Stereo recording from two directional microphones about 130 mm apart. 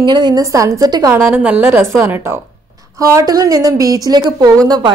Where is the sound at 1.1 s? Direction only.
15° right (ahead or behind).